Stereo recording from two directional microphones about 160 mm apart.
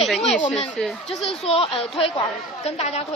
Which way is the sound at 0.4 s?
45° left (ahead or behind).